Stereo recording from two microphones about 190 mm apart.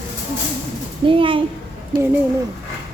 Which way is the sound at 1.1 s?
25° right (ahead or behind).